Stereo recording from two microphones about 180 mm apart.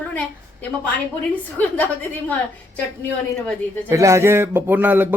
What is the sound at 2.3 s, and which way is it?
Speech, 10° left (ahead or behind).